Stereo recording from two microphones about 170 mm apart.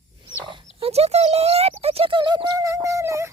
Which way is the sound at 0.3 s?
30° right (ahead or behind).